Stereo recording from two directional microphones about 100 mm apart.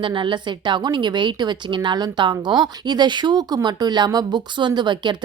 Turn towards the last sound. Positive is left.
turn(degrees=-50)  # may be behind; listen again after turning